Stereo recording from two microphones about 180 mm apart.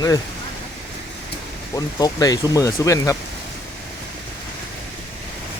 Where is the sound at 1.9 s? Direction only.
20° left (ahead or behind).